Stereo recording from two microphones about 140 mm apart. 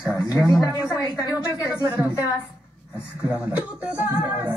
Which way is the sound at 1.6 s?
10° right (ahead or behind).